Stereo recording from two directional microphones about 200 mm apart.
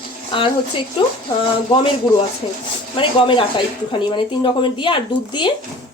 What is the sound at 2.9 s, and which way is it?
Speech, 25° left (ahead or behind).